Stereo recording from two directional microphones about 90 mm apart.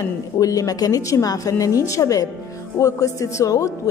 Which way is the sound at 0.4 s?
40° left (ahead or behind).